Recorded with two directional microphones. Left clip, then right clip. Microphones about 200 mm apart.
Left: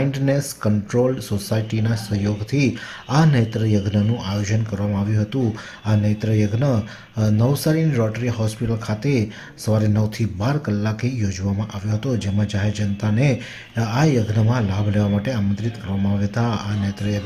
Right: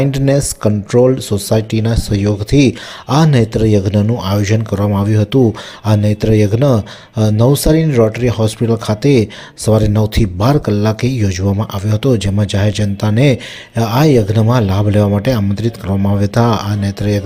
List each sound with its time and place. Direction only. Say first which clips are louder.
0.0 s a man's voice: right 8 dB; 35° right (ahead or behind)